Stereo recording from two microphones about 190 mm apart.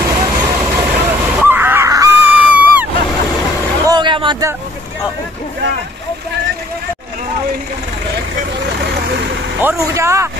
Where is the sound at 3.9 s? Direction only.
25° right (ahead or behind).